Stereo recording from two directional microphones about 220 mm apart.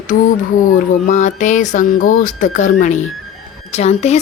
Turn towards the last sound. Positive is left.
turn(degrees=30)  # may be behind; listen again after turning